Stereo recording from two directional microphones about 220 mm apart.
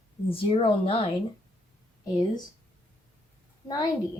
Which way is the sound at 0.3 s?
25° left (ahead or behind).